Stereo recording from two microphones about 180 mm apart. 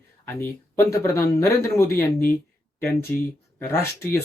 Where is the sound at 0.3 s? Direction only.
15° left (ahead or behind).